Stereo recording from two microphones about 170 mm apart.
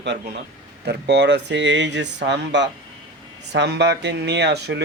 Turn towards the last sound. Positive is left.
turn(degrees=-85)